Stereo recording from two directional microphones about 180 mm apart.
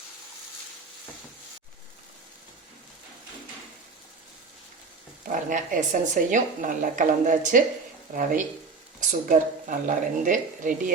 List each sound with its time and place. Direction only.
5.2 s speech: 45° right (ahead or behind)